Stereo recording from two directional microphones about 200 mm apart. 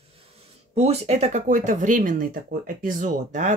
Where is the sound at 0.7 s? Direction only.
30° right (ahead or behind).